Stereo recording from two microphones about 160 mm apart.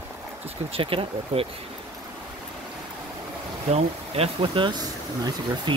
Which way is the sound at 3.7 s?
40° right (ahead or behind).